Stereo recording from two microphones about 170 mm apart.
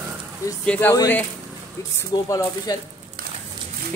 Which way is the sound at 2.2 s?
20° left (ahead or behind).